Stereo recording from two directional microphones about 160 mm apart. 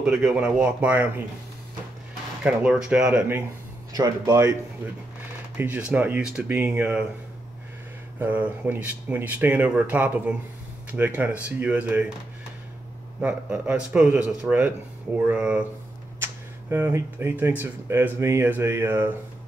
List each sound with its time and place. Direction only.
0.0 s speech: 5° right (ahead or behind)
2.4 s speech: 10° right (ahead or behind)
3.9 s speech: 20° right (ahead or behind)
5.6 s speech: 10° right (ahead or behind)
8.2 s speech: 10° right (ahead or behind)
13.2 s speech: 10° right (ahead or behind)